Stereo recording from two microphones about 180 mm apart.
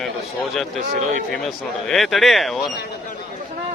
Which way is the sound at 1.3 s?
Centre (ahead or behind).